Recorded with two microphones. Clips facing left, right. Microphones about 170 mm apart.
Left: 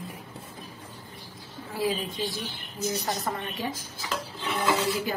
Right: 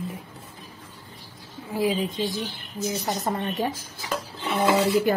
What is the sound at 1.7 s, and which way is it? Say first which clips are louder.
Speech: right 4 dB; 15° right (ahead or behind).